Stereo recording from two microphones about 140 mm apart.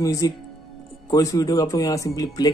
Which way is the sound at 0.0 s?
25° left (ahead or behind).